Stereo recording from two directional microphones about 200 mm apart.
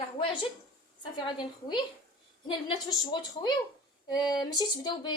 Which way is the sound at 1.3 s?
25° left (ahead or behind).